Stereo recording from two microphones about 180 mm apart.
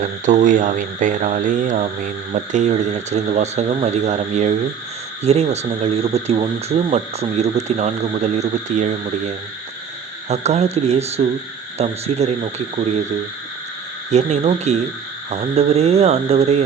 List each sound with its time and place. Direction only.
0.0 s speech: 45° right (ahead or behind)
14.1 s speech: 40° right (ahead or behind)